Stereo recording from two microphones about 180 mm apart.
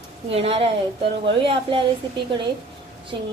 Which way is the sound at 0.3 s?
35° right (ahead or behind).